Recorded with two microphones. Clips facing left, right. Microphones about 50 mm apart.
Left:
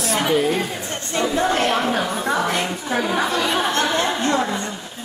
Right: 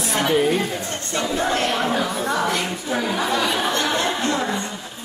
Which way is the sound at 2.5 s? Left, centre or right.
Left.